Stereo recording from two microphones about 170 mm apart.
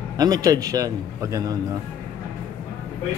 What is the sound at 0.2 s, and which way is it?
A man's voice, 20° right (ahead or behind).